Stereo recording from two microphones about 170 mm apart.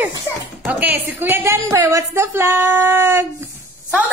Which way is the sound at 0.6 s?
10° right (ahead or behind).